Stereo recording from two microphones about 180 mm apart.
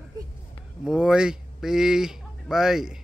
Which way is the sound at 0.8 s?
5° right (ahead or behind).